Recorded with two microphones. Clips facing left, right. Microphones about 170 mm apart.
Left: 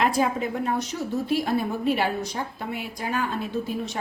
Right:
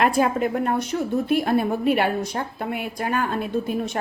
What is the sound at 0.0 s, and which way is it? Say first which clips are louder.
A woman's voice: right 3 dB; 55° right (ahead or behind).